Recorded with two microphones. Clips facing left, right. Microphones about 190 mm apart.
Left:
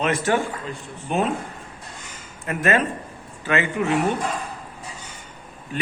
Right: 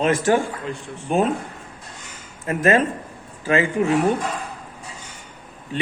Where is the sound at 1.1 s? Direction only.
40° right (ahead or behind).